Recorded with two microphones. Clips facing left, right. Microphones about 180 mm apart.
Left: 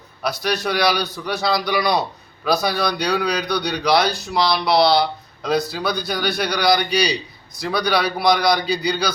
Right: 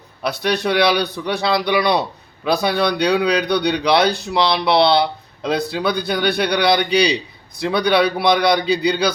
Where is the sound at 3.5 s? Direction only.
60° right (ahead or behind).